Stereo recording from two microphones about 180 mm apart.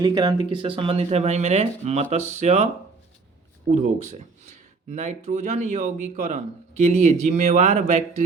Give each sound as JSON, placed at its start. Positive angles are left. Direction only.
{"t": 0.0, "sound": "speech", "side_deg": -20}
{"t": 3.7, "sound": "speech", "side_deg": -40}